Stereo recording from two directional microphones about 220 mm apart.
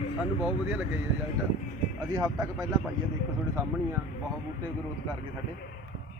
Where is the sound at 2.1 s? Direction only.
15° right (ahead or behind).